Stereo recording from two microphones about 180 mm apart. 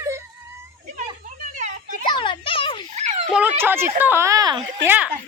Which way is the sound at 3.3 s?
10° right (ahead or behind).